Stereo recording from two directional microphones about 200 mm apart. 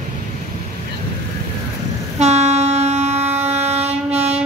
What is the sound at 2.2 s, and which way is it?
Train, 35° right (ahead or behind).